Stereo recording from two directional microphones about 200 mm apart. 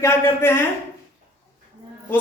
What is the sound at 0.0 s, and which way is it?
Speech, 15° left (ahead or behind).